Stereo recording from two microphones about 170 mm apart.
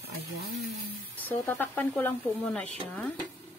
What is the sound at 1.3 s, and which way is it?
Speech, 15° left (ahead or behind).